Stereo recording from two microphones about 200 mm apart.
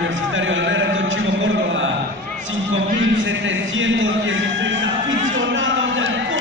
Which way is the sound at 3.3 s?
70° right (ahead or behind).